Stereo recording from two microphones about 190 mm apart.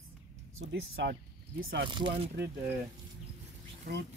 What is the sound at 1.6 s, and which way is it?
Speech, 75° right (ahead or behind).